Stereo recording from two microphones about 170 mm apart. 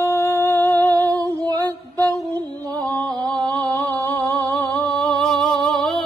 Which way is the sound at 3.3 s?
25° right (ahead or behind).